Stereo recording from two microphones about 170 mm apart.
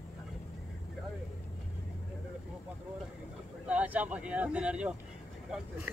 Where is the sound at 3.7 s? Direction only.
10° right (ahead or behind).